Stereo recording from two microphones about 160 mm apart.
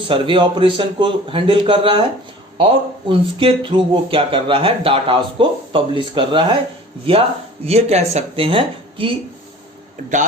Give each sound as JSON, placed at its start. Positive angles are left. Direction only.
{"t": 0.0, "sound": "speech", "side_deg": -30}
{"t": 3.1, "sound": "speech", "side_deg": -35}